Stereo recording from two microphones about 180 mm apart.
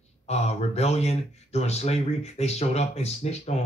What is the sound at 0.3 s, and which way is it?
Speech, 35° left (ahead or behind).